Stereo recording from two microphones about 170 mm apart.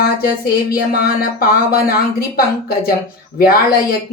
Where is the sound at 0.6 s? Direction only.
65° left (ahead or behind).